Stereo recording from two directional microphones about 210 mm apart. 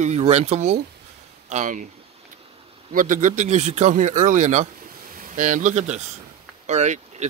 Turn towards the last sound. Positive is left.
turn(degrees=-35)  # may be behind; listen again after turning